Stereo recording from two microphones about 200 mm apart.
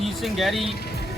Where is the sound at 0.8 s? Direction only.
55° left (ahead or behind).